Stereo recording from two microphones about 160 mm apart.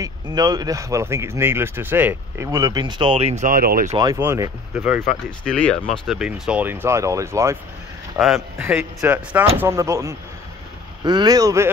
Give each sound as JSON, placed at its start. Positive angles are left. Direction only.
{"t": 0.0, "sound": "speech", "side_deg": -25}
{"t": 3.4, "sound": "speech", "side_deg": -65}
{"t": 4.2, "sound": "speech", "side_deg": -15}
{"t": 5.2, "sound": "speech", "side_deg": 5}
{"t": 8.2, "sound": "speech", "side_deg": -5}